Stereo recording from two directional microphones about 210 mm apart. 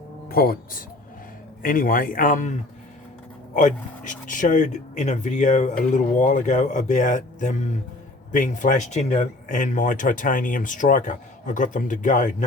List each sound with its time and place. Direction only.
0.3 s speech: 45° left (ahead or behind)